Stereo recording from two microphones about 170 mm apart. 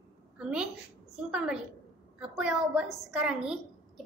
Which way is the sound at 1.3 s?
5° right (ahead or behind).